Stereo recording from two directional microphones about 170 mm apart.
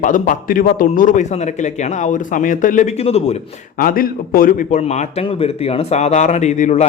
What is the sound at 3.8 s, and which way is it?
A man's voice, 60° left (ahead or behind).